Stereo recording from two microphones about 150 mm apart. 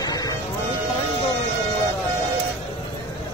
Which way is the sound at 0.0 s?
25° left (ahead or behind).